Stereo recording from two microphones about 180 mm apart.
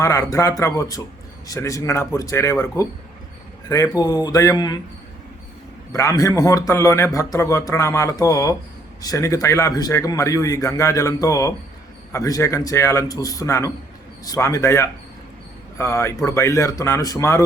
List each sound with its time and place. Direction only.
0.0 s a man's voice: 15° left (ahead or behind)
5.9 s a man's voice: 15° left (ahead or behind)